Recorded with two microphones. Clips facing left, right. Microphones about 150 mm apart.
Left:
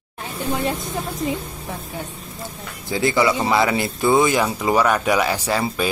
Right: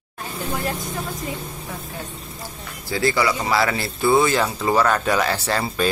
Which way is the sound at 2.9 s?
20° left (ahead or behind).